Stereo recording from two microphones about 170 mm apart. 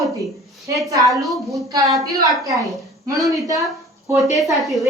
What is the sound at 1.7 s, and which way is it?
A woman's voice, 20° right (ahead or behind).